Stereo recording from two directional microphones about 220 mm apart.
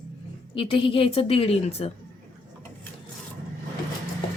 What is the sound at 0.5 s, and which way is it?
A woman's voice, 25° left (ahead or behind).